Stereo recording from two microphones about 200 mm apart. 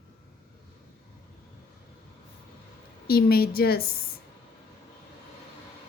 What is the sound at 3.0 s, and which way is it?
Speech, 50° left (ahead or behind).